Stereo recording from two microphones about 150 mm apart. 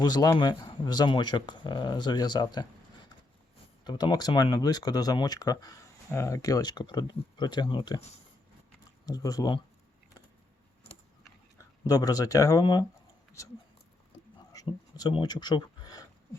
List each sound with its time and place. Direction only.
0.0 s speech: 25° left (ahead or behind)
9.0 s speech: 25° left (ahead or behind)
11.5 s speech: 25° left (ahead or behind)
14.3 s a sound: 30° left (ahead or behind)